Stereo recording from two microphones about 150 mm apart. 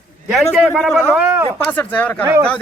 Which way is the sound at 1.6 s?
10° left (ahead or behind).